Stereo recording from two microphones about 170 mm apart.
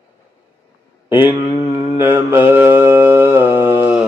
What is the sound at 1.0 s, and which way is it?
Mantra, 10° right (ahead or behind).